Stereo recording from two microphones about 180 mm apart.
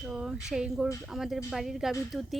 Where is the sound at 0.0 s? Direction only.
5° right (ahead or behind).